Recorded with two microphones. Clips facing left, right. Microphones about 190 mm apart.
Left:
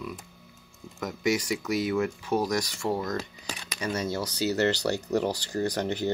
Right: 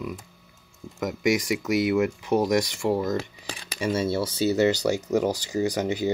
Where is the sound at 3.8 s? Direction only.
25° right (ahead or behind).